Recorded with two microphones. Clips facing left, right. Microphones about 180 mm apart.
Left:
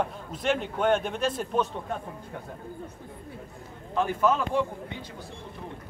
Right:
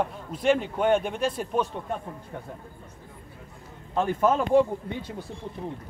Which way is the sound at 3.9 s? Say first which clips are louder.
Right 1 dB; 45° right (ahead or behind).